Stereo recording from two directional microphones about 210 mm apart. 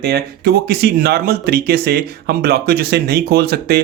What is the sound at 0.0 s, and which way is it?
Speech, 50° right (ahead or behind).